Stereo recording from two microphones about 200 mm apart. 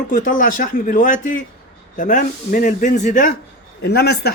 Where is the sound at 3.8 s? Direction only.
55° left (ahead or behind).